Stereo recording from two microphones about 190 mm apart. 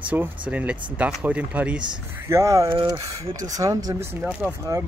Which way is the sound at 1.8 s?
20° right (ahead or behind).